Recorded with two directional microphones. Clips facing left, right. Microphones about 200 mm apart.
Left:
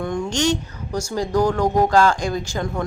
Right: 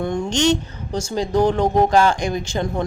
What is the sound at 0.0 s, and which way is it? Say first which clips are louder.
Speech: right 2 dB; 25° right (ahead or behind).